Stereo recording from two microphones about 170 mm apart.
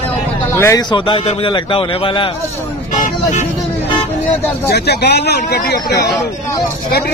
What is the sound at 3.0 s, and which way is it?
Vehicle, 45° left (ahead or behind).